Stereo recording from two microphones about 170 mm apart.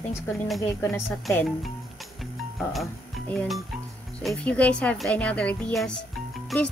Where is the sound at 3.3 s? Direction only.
5° left (ahead or behind).